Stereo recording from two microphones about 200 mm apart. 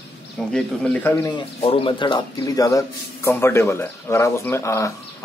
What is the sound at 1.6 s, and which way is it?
A man's voice, 25° left (ahead or behind).